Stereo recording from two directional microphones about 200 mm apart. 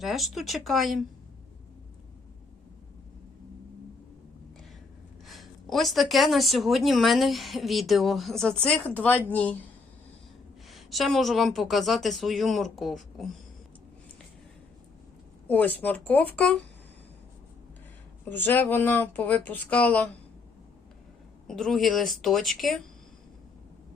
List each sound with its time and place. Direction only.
0.0 s a woman's voice: centre (ahead or behind)
5.2 s a woman's voice: centre (ahead or behind)
10.7 s a woman's voice: centre (ahead or behind)
15.4 s speech: 10° left (ahead or behind)
18.3 s speech: 10° left (ahead or behind)
21.4 s a woman's voice: centre (ahead or behind)